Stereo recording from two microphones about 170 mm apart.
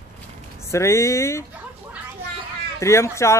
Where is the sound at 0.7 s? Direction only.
15° left (ahead or behind).